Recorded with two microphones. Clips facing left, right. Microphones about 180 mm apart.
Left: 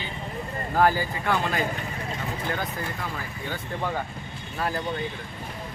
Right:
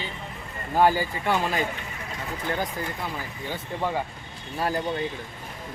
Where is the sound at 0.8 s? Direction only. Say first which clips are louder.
Right 1 dB; 15° right (ahead or behind).